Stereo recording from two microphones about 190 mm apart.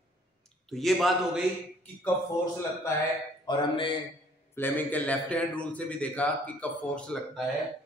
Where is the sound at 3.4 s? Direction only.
25° left (ahead or behind).